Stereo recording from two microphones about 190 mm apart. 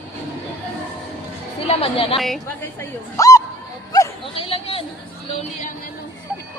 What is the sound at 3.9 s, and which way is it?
Chatter, 25° left (ahead or behind).